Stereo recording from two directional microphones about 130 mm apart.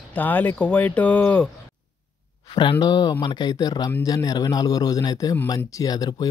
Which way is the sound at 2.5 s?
35° left (ahead or behind).